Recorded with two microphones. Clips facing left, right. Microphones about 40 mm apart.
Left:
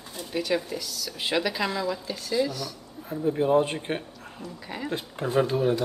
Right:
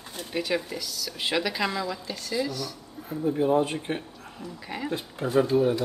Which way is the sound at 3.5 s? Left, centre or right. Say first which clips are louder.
Left 1 dB; left.